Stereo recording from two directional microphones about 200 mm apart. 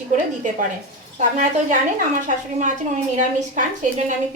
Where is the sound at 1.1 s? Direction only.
35° right (ahead or behind).